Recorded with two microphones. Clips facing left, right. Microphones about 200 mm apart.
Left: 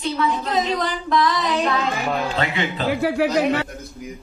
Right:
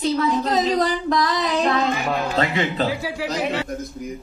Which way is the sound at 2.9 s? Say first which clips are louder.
Left 6 dB; 60° left (ahead or behind).